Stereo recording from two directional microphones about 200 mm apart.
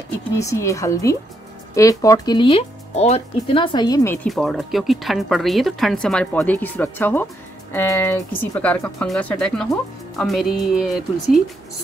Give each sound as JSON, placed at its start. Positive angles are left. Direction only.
{"t": 0.4, "sound": "a woman's voice", "side_deg": 15}
{"t": 4.3, "sound": "a woman's voice", "side_deg": 0}